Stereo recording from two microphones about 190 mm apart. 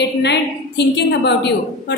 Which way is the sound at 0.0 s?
65° left (ahead or behind).